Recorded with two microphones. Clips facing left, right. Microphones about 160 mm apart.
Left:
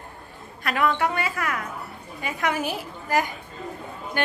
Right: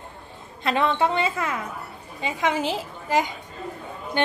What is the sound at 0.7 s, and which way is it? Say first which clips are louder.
A woman's voice: right 2 dB; 25° right (ahead or behind).